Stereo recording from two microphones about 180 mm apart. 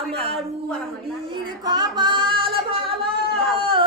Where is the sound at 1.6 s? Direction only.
25° right (ahead or behind).